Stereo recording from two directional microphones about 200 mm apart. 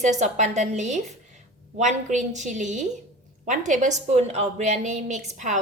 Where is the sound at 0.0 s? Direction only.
35° right (ahead or behind).